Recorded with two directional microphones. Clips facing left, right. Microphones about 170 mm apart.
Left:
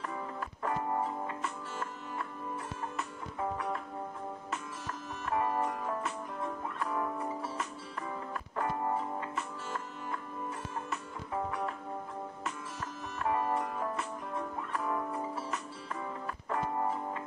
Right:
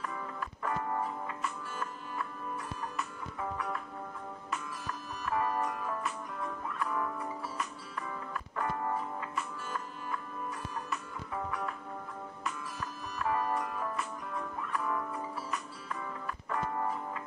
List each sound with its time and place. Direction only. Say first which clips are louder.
0.6 s music: left 1 dB; 15° left (ahead or behind)
5.2 s music: left 1 dB; 25° left (ahead or behind)
8.3 s music: left 1 dB; 25° left (ahead or behind)
13.2 s music: left 1 dB; 25° left (ahead or behind)